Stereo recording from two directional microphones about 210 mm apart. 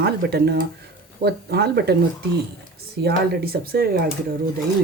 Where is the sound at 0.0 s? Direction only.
50° right (ahead or behind).